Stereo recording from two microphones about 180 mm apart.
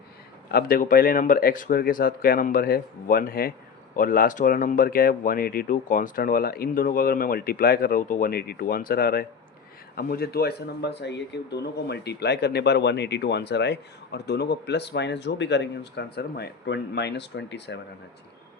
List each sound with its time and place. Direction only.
0.5 s speech: 50° left (ahead or behind); by 17.7 s 75° left (ahead or behind)